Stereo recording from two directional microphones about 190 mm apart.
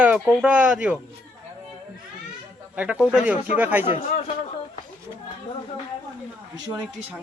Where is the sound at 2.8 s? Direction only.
5° right (ahead or behind).